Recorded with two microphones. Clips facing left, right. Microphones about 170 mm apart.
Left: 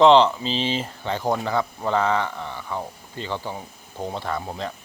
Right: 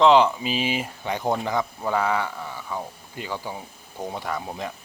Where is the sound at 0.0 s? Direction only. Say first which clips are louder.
Left 2 dB; 10° right (ahead or behind).